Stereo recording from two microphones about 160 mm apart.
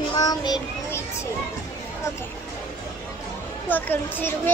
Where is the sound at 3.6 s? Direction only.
10° left (ahead or behind).